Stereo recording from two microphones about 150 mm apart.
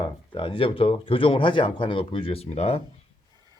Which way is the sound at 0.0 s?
35° left (ahead or behind).